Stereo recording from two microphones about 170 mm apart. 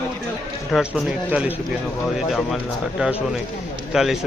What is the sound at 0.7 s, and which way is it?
A man's voice, centre (ahead or behind).